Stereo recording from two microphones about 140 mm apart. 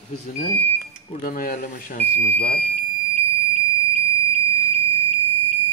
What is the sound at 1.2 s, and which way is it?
Speech, 90° left.